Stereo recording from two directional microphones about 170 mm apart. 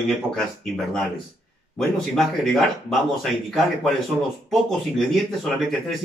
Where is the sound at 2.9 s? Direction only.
Centre (ahead or behind).